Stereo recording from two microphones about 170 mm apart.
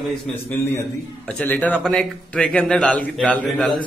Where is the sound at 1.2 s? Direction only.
10° left (ahead or behind).